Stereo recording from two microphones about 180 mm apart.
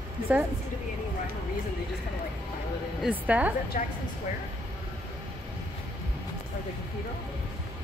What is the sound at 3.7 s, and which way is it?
Speech, 50° left (ahead or behind).